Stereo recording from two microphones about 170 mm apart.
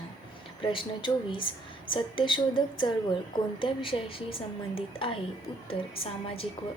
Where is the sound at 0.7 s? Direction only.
30° left (ahead or behind).